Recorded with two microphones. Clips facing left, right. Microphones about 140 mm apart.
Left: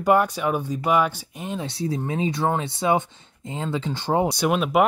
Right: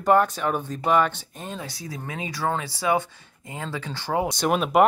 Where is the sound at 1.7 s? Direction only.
30° left (ahead or behind).